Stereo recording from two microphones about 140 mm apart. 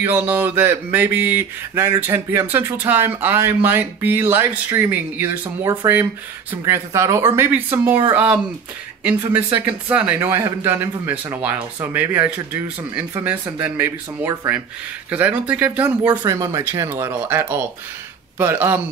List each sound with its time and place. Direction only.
0.0 s speech: 15° right (ahead or behind)
16.1 s speech: 20° right (ahead or behind)